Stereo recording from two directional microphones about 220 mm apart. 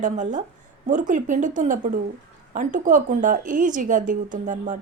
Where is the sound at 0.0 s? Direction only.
35° right (ahead or behind).